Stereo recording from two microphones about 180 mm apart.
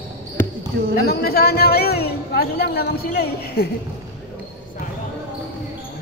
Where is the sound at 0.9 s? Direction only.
60° left (ahead or behind).